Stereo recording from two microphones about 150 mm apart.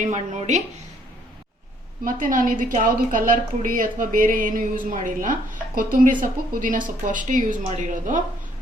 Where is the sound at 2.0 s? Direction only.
60° right (ahead or behind).